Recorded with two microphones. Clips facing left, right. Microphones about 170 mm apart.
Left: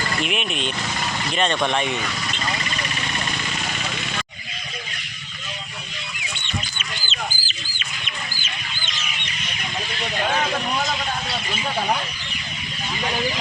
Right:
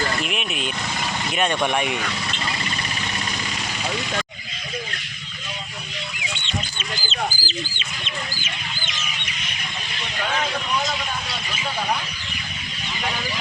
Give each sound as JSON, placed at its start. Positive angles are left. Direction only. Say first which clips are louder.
{"t": 0.2, "sound": "speech", "louder": "left 2 dB", "side_deg": 0}
{"t": 6.7, "sound": "chicken", "louder": "right 4 dB", "side_deg": -35}